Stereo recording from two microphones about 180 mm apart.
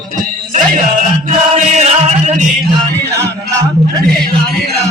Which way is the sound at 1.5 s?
35° right (ahead or behind).